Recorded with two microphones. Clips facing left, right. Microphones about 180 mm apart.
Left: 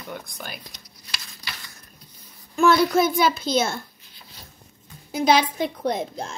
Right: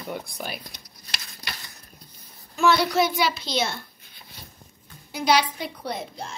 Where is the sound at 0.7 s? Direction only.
55° right (ahead or behind).